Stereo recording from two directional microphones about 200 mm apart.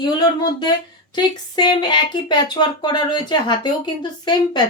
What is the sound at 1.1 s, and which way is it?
Speech, 20° left (ahead or behind).